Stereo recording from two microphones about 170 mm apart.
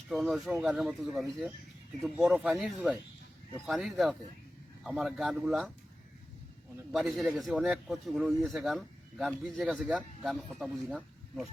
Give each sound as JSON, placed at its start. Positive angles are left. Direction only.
{"t": 0.1, "sound": "speech", "side_deg": 0}
{"t": 6.9, "sound": "speech", "side_deg": 0}